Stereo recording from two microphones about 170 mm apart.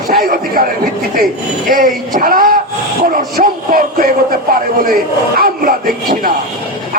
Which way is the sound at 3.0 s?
55° right (ahead or behind).